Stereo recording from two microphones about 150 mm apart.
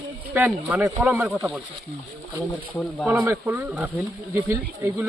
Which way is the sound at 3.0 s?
5° right (ahead or behind).